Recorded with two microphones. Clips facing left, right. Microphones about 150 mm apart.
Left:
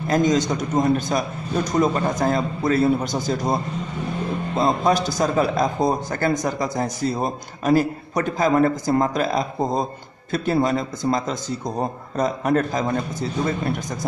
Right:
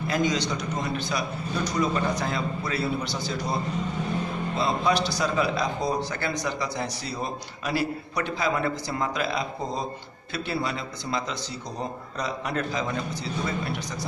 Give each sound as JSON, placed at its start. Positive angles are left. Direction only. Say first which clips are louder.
{"t": 0.1, "sound": "a man's voice", "louder": "left 7 dB", "side_deg": 45}